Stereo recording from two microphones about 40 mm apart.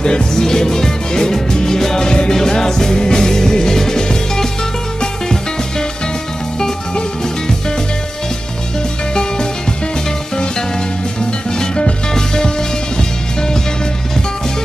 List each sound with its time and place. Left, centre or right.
0.0 s music: centre
9.1 s music: centre
11.5 s music: centre